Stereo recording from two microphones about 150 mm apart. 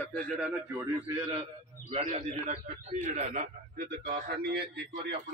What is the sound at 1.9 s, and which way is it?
Speech, 50° right (ahead or behind).